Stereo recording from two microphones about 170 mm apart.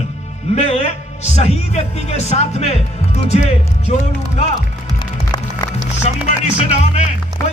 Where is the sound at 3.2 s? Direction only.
40° left (ahead or behind).